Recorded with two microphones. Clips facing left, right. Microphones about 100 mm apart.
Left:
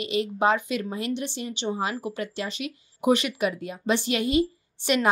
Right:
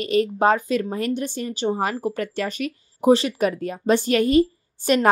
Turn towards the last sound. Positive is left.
turn(degrees=-45)  # may be behind; listen again after turning